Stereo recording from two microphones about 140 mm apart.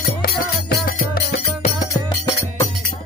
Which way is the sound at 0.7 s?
90° left.